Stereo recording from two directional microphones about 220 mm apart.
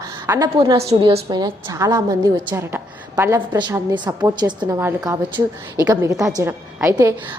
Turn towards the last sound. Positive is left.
turn(degrees=-15)  # may be behind; listen again after turning